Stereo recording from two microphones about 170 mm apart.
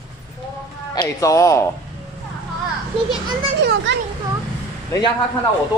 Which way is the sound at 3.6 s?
90° right.